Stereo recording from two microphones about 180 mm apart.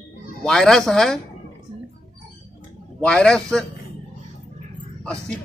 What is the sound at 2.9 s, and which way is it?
Speech, 5° left (ahead or behind).